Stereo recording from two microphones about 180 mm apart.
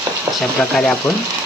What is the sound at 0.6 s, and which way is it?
Speech, centre (ahead or behind).